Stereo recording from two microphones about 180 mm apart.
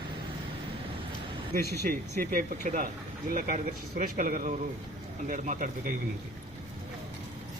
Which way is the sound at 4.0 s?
50° right (ahead or behind).